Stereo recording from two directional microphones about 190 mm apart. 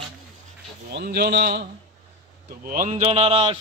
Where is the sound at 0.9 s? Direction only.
60° right (ahead or behind).